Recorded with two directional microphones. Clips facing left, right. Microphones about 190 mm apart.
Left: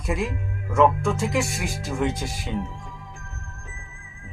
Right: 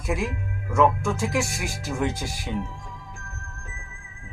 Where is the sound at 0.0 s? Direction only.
Centre (ahead or behind).